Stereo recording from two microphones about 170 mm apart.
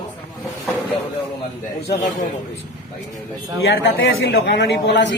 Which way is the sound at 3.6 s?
90° left.